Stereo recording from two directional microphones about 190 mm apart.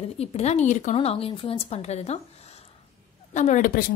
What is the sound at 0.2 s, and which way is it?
A woman's voice, 35° left (ahead or behind).